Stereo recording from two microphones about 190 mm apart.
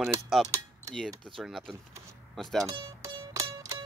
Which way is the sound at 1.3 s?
Centre (ahead or behind).